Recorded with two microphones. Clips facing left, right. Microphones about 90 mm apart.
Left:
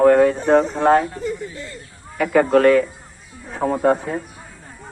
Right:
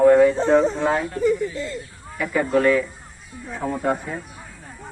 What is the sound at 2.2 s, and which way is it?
Speech, 60° left (ahead or behind).